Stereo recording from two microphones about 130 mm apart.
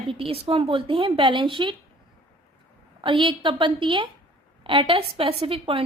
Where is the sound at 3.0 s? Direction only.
40° right (ahead or behind).